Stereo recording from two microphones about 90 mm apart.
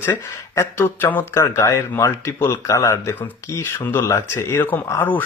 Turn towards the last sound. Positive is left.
turn(degrees=20)  # may be behind; listen again after turning